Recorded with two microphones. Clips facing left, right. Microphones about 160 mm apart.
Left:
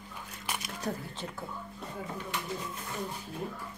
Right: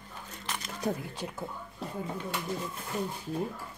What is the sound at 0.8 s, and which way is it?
Speech, 15° right (ahead or behind).